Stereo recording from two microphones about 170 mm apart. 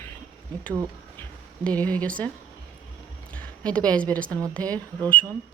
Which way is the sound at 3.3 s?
5° left (ahead or behind).